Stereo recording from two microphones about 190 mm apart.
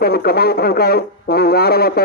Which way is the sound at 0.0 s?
55° left (ahead or behind).